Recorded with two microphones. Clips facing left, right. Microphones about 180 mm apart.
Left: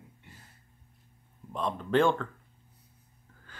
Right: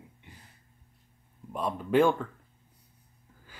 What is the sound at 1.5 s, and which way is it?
Speech, 10° right (ahead or behind).